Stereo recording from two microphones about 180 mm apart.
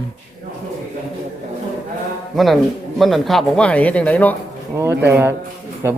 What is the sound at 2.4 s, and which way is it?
Speech, centre (ahead or behind).